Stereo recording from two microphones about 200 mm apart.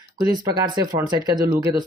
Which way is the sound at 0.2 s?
20° right (ahead or behind).